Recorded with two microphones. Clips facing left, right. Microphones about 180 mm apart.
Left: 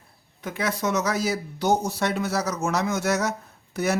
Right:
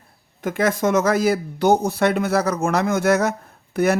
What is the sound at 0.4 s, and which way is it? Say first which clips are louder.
Speech: right 7 dB; 50° right (ahead or behind).